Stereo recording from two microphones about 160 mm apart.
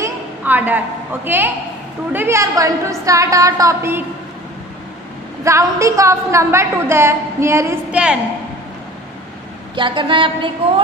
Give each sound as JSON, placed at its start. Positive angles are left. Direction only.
{"t": 0.0, "sound": "a sound", "side_deg": -10}
{"t": 2.1, "sound": "a woman's voice", "side_deg": -15}
{"t": 5.4, "sound": "a woman's voice", "side_deg": -20}
{"t": 9.8, "sound": "a woman's voice", "side_deg": -30}